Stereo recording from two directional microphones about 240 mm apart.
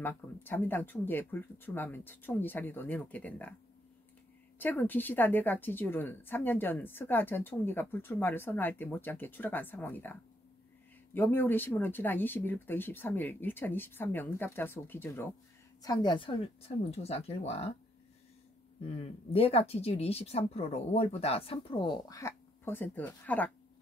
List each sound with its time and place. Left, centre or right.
0.0 s a woman's voice: centre
4.6 s a woman's voice: centre
11.1 s a woman's voice: centre; by 17.6 s left
18.9 s speech: left; by 23.5 s centre